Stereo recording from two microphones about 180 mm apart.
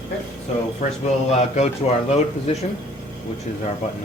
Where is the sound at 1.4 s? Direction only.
40° left (ahead or behind).